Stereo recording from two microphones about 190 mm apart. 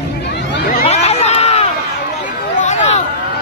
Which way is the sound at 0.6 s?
50° left (ahead or behind).